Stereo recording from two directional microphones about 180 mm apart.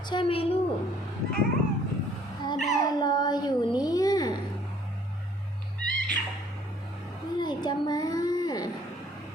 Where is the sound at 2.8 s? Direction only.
25° left (ahead or behind).